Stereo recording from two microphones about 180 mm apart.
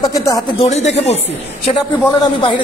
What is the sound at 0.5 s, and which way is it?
Speech, 35° left (ahead or behind).